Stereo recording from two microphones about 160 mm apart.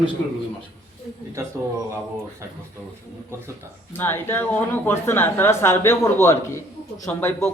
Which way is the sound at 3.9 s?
15° left (ahead or behind).